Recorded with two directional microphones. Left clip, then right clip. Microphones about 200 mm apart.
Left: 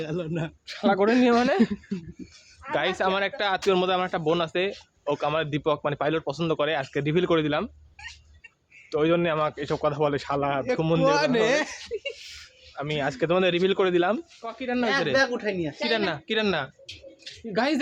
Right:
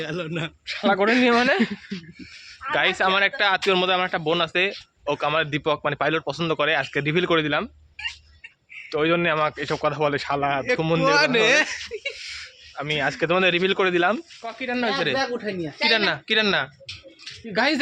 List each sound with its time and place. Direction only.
0.0 s speech: 15° left (ahead or behind)
0.7 s speech: centre (ahead or behind)
8.9 s speech: centre (ahead or behind)
11.0 s speech: 20° left (ahead or behind)
12.3 s speech: 10° right (ahead or behind)